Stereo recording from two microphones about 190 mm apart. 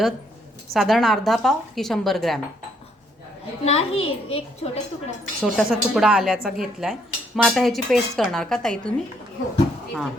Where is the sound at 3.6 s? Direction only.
30° left (ahead or behind).